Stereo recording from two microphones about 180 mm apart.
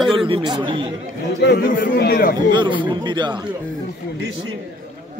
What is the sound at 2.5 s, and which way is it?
Speech, 25° right (ahead or behind).